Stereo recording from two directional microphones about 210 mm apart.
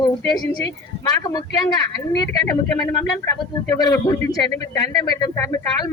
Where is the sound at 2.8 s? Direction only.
15° left (ahead or behind).